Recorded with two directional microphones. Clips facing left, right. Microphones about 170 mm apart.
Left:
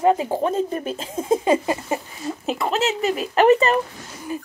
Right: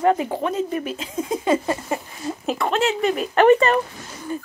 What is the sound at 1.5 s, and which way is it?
Speech, 15° left (ahead or behind).